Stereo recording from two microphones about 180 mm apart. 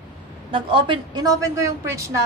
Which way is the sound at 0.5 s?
30° right (ahead or behind).